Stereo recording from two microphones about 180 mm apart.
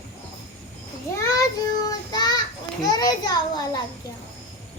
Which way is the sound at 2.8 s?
20° left (ahead or behind).